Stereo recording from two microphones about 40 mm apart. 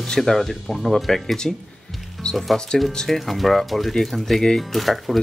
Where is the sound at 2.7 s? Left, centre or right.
Left.